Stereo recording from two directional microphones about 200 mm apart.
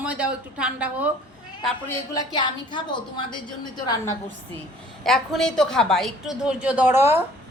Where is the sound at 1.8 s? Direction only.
20° left (ahead or behind).